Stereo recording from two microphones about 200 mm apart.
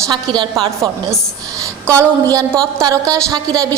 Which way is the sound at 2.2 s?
15° right (ahead or behind).